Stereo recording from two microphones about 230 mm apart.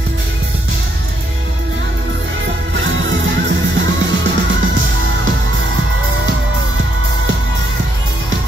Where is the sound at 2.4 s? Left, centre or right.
Right.